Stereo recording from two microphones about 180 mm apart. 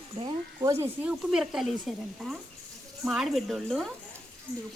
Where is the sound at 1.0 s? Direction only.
5° right (ahead or behind).